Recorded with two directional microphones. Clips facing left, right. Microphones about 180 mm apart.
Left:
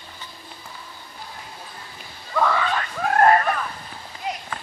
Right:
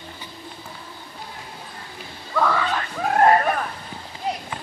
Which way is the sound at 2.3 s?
Centre (ahead or behind).